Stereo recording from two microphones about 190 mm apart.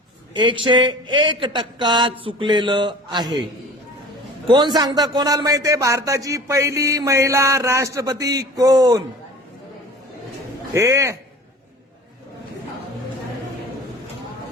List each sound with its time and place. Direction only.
0.3 s speech: 25° right (ahead or behind)
4.4 s a man's voice: 25° right (ahead or behind)
10.8 s a man's voice: 15° right (ahead or behind)